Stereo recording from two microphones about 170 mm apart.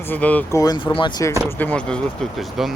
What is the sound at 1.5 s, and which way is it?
Speech, 10° left (ahead or behind).